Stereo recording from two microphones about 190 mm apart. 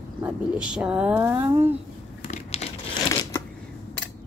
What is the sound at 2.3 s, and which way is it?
Crumpling, 35° left (ahead or behind).